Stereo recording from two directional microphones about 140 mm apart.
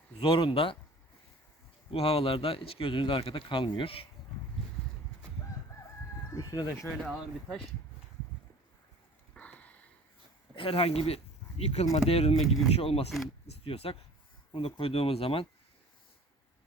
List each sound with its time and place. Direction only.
0.2 s speech: 35° left (ahead or behind)
1.9 s speech: 40° left (ahead or behind)
6.3 s speech: 30° left (ahead or behind)
6.8 s speech: 5° left (ahead or behind)
9.3 s a sound: 10° left (ahead or behind)
10.5 s speech: 40° left (ahead or behind)